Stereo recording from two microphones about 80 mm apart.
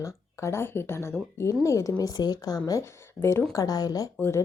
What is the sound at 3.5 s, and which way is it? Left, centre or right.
Speech, left.